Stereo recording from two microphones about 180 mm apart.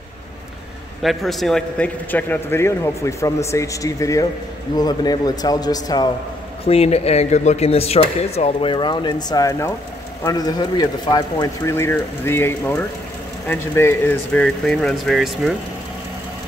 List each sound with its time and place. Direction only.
1.0 s a man's voice: centre (ahead or behind); by 6.1 s 20° left (ahead or behind)
6.7 s speech: 35° left (ahead or behind); by 15.5 s centre (ahead or behind)